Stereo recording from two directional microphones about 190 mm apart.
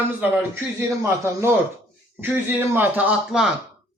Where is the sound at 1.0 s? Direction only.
15° right (ahead or behind).